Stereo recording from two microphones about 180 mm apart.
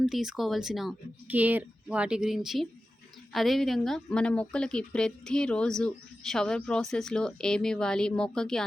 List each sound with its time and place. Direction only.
0.0 s a woman's voice: centre (ahead or behind)